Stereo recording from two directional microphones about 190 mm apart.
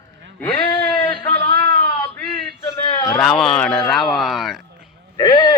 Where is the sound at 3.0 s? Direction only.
15° left (ahead or behind).